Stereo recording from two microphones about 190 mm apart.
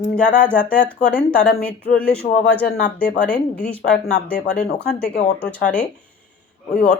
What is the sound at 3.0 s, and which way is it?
Speech, 45° left (ahead or behind).